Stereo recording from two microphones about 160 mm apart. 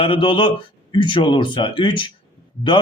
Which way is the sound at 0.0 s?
35° left (ahead or behind).